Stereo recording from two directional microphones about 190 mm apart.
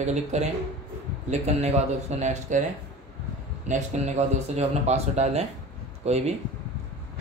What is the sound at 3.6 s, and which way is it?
Speech, 35° right (ahead or behind).